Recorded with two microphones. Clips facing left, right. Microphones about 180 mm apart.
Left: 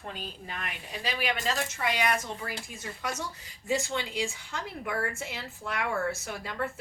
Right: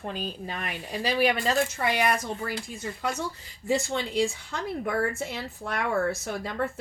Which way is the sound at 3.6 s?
35° right (ahead or behind).